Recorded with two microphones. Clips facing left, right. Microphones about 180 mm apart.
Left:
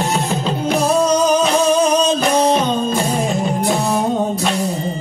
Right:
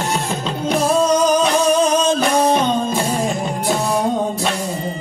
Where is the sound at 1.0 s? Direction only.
20° left (ahead or behind).